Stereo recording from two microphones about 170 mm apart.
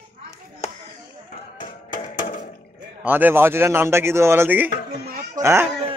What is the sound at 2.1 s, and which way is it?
Water, 55° left (ahead or behind).